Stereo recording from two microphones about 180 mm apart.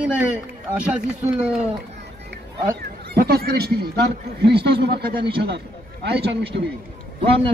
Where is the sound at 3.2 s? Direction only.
60° right (ahead or behind).